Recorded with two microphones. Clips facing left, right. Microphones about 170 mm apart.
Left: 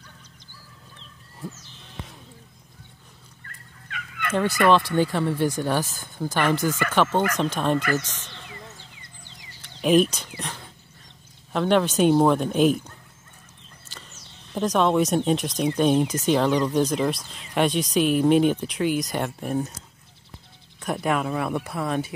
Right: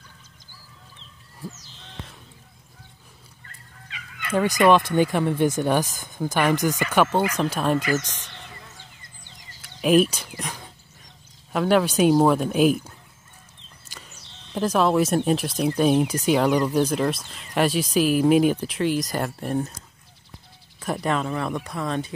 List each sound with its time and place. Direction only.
3.4 s fowl: 55° left (ahead or behind)
4.3 s speech: 15° right (ahead or behind)
9.0 s a sound: 45° right (ahead or behind)
9.8 s speech: 5° right (ahead or behind)
13.8 s sheep: 10° right (ahead or behind)
14.5 s speech: 5° right (ahead or behind)
20.8 s speech: centre (ahead or behind)